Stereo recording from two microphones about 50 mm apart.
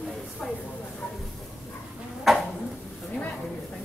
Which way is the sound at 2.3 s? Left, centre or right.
Centre.